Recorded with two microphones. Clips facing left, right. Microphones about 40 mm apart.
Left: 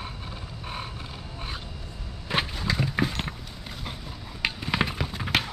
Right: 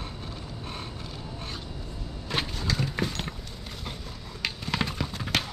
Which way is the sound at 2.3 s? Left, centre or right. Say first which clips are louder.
Left 3 dB; centre.